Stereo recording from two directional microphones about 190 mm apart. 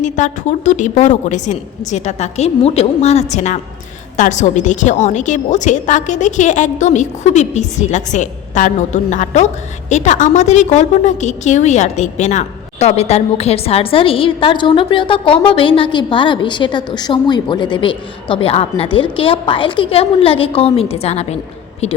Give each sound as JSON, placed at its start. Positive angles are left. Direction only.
{"t": 0.0, "sound": "a woman's voice", "side_deg": 40}